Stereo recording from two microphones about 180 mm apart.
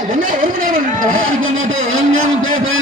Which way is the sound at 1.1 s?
90° right.